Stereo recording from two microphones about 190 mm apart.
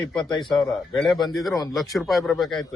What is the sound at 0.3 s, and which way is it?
A man's voice, centre (ahead or behind).